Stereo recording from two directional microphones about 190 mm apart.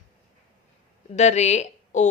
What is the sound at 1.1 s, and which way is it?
Speech, 35° left (ahead or behind).